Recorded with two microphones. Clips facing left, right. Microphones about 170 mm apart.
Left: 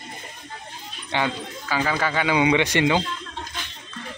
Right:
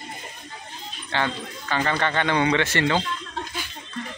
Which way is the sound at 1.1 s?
10° left (ahead or behind).